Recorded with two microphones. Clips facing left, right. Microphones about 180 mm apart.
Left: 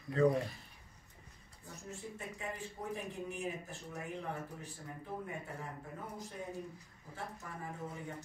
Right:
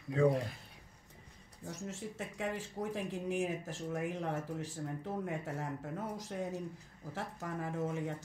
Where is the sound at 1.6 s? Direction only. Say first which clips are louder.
Right 5 dB; 90° right.